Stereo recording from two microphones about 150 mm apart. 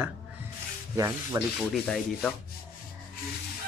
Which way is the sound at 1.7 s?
5° left (ahead or behind).